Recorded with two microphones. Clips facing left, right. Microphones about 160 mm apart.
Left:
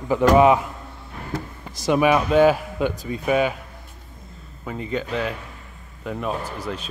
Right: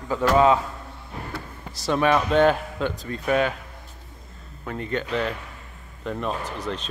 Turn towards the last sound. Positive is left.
turn(degrees=5)  # may be behind; listen again after turning